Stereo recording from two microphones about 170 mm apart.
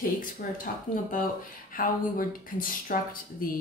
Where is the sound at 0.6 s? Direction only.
55° left (ahead or behind).